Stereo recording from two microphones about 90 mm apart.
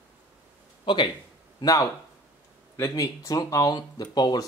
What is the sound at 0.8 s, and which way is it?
Speech, 60° left (ahead or behind).